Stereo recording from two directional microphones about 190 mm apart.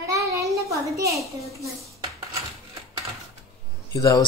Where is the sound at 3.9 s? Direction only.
20° left (ahead or behind).